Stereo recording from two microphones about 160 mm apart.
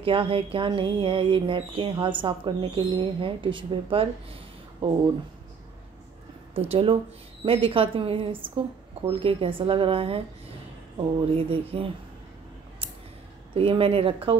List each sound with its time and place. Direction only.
0.0 s speech: 35° right (ahead or behind)
6.5 s speech: 35° right (ahead or behind)
11.3 s speech: 35° right (ahead or behind)
13.6 s speech: 35° right (ahead or behind)